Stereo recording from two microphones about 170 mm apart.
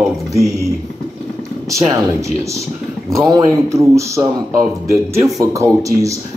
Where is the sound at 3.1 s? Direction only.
20° right (ahead or behind).